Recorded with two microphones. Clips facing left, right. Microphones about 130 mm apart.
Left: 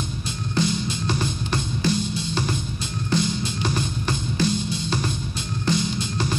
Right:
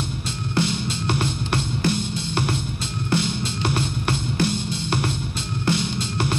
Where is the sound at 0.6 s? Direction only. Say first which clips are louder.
Even; 65° right (ahead or behind).